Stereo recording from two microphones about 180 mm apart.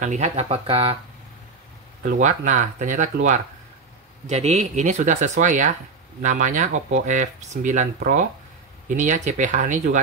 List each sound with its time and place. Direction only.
0.0 s speech: 40° right (ahead or behind)
2.0 s speech: 45° right (ahead or behind)